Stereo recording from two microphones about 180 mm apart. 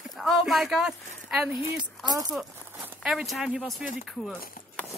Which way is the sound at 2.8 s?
5° right (ahead or behind).